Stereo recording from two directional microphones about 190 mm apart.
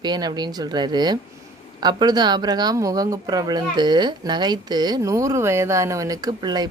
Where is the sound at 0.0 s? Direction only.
20° right (ahead or behind).